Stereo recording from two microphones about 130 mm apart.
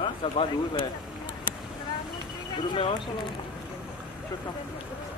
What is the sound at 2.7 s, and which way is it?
Speech, 35° left (ahead or behind).